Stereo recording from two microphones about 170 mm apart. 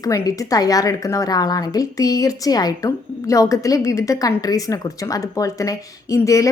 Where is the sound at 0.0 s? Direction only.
20° left (ahead or behind).